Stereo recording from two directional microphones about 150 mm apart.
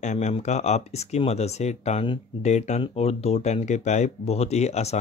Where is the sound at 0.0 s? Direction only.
50° left (ahead or behind).